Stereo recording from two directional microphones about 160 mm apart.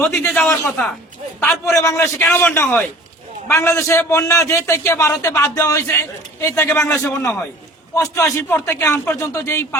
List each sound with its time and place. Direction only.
0.1 s a man's voice: 15° left (ahead or behind)
1.6 s a man's voice: 20° left (ahead or behind)